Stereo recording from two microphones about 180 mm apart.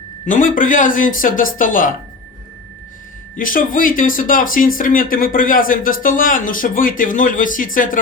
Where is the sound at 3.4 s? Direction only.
50° left (ahead or behind).